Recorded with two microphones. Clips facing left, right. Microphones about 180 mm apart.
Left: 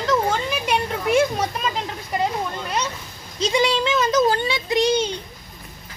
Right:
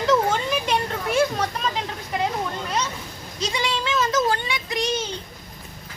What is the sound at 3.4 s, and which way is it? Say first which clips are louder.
Speech: left 7 dB; 20° left (ahead or behind).